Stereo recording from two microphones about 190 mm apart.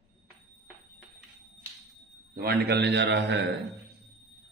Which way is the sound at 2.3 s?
55° right (ahead or behind).